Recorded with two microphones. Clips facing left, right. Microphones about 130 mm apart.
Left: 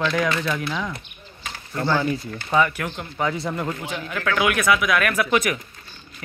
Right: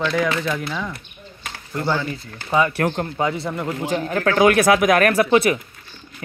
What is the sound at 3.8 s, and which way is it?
Speech, 40° right (ahead or behind).